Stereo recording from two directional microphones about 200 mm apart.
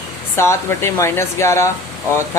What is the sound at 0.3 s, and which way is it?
Speech, 15° left (ahead or behind).